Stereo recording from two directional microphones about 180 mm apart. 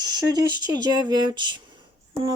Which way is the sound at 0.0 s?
20° right (ahead or behind).